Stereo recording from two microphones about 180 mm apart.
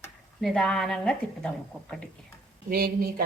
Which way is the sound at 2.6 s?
55° right (ahead or behind).